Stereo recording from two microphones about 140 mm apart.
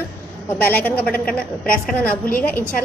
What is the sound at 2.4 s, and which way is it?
Speech, 10° left (ahead or behind).